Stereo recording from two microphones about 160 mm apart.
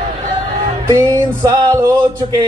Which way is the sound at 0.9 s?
20° right (ahead or behind).